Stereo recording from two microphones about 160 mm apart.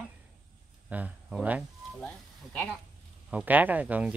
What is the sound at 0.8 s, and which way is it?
Speech, 10° right (ahead or behind).